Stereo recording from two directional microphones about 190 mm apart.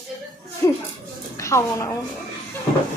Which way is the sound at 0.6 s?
15° left (ahead or behind).